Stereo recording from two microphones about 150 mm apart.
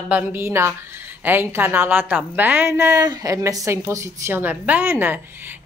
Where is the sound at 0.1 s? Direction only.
10° right (ahead or behind).